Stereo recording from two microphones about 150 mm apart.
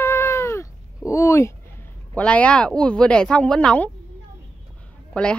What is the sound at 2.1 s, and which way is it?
Speech, 10° left (ahead or behind).